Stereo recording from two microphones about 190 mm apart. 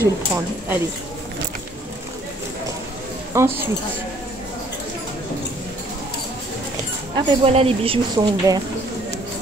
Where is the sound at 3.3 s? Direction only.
10° right (ahead or behind).